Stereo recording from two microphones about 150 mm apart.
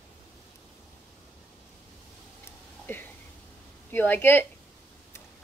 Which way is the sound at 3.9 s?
15° left (ahead or behind).